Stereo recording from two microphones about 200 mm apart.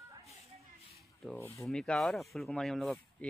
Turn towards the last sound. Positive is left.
turn(degrees=0)  # may be behind; listen again after turning